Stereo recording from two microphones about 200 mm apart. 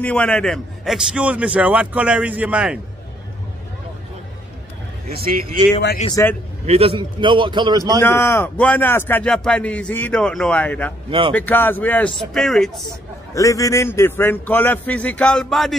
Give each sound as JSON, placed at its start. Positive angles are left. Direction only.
{"t": 0.0, "sound": "a man's voice", "side_deg": 5}
{"t": 5.1, "sound": "a man's voice", "side_deg": -50}
{"t": 6.0, "sound": "a man's voice", "side_deg": 15}
{"t": 6.6, "sound": "a man's voice", "side_deg": -30}
{"t": 8.0, "sound": "a man's voice", "side_deg": 10}
{"t": 11.1, "sound": "a man's voice", "side_deg": -25}
{"t": 11.3, "sound": "a man's voice", "side_deg": 10}
{"t": 12.8, "sound": "a man's voice", "side_deg": 15}